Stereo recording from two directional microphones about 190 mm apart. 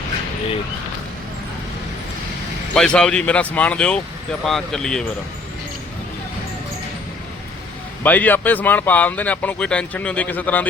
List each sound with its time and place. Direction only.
2.7 s speech: 5° left (ahead or behind)
8.0 s speech: 10° left (ahead or behind)